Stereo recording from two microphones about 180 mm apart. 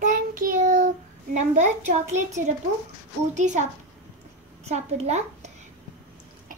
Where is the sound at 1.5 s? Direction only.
45° right (ahead or behind).